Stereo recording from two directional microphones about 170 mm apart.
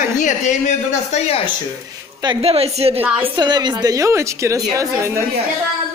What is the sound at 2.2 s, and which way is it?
Speech, 30° right (ahead or behind).